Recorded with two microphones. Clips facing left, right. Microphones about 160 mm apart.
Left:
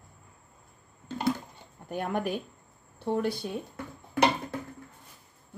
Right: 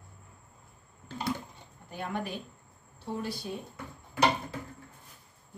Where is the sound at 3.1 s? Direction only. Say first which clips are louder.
Left 6 dB; 60° left (ahead or behind).